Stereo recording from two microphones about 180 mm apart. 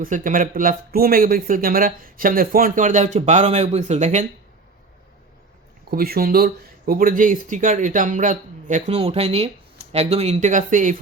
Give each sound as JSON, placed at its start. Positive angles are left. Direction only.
{"t": 0.0, "sound": "speech", "side_deg": -50}
{"t": 5.9, "sound": "speech", "side_deg": -55}